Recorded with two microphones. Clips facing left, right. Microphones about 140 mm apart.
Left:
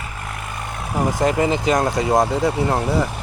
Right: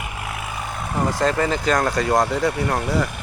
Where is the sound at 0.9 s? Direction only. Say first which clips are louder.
Left 2 dB; 15° left (ahead or behind).